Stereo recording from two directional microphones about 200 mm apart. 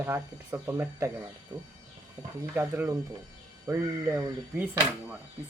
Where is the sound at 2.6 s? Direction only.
10° right (ahead or behind).